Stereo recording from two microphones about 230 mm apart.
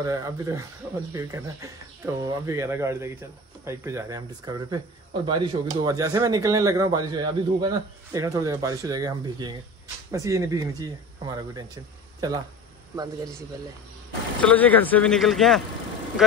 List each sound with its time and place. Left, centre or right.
0.0 s speech: centre
14.4 s speech: centre